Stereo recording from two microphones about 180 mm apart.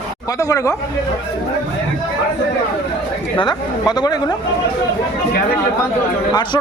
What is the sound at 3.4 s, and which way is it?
Speech, 25° left (ahead or behind).